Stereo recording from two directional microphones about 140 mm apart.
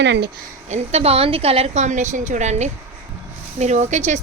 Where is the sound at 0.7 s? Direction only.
50° right (ahead or behind).